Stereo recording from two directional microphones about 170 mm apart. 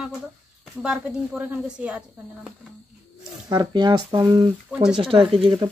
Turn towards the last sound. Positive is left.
turn(degrees=-35)  # may be behind; listen again after turning